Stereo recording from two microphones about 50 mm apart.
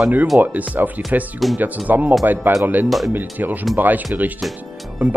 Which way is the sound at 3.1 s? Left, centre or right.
Right.